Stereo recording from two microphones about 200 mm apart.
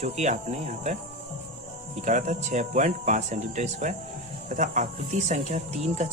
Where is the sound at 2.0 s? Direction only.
35° right (ahead or behind).